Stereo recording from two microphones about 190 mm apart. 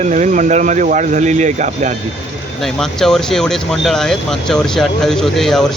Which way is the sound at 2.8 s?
Centre (ahead or behind).